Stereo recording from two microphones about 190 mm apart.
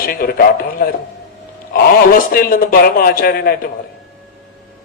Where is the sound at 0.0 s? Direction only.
50° left (ahead or behind).